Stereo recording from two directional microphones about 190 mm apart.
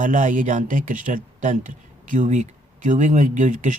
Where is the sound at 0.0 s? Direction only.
45° right (ahead or behind).